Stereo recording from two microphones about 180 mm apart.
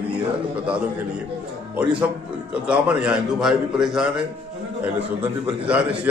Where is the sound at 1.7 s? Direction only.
5° right (ahead or behind).